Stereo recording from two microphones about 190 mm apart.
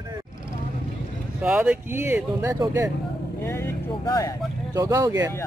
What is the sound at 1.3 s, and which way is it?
Speech, 5° right (ahead or behind).